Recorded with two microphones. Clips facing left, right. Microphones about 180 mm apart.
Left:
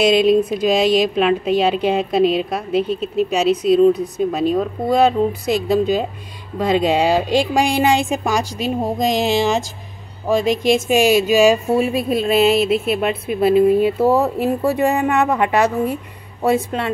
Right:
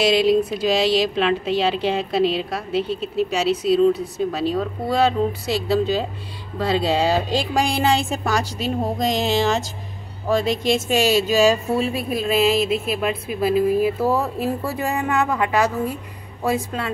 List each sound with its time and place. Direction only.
0.0 s a woman's voice: 20° left (ahead or behind)
12.1 s a woman's voice: 30° left (ahead or behind)